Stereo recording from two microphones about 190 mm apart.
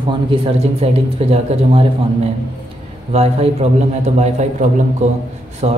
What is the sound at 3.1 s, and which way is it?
A man's voice, 35° right (ahead or behind).